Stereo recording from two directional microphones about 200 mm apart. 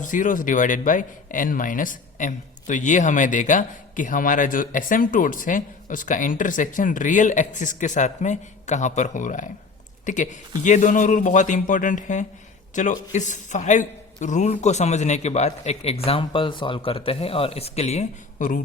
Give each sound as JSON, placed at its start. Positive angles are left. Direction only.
{"t": 0.0, "sound": "speech", "side_deg": 40}